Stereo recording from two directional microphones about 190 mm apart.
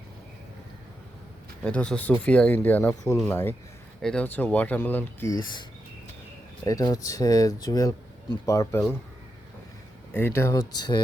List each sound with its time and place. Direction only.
1.6 s speech: 5° left (ahead or behind)
6.7 s speech: 20° left (ahead or behind)
10.1 s speech: 10° left (ahead or behind)